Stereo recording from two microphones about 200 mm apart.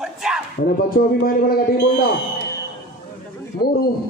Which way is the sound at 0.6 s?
50° left (ahead or behind).